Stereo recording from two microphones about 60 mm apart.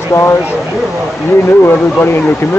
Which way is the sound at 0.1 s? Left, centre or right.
Left.